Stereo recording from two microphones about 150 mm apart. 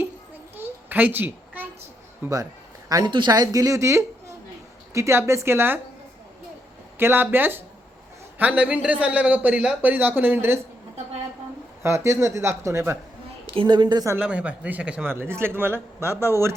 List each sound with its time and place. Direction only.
0.5 s a sound: 15° right (ahead or behind)
2.2 s a man's voice: 25° right (ahead or behind)
7.0 s a man's voice: 15° right (ahead or behind)
11.8 s a man's voice: 15° right (ahead or behind)
13.5 s speech: 30° right (ahead or behind)
14.2 s a man's voice: 10° right (ahead or behind)